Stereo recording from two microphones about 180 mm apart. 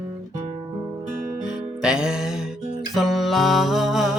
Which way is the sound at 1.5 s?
5° right (ahead or behind).